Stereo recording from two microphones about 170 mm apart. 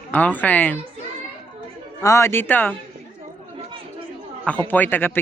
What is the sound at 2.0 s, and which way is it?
Speech, 15° left (ahead or behind).